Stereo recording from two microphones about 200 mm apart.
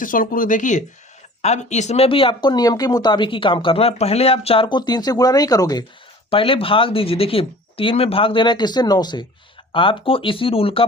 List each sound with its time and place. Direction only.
0.0 s speech: 45° left (ahead or behind); by 10.8 s 30° left (ahead or behind)